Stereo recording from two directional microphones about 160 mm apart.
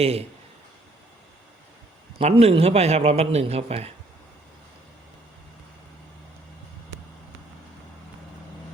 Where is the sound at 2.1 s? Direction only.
35° right (ahead or behind).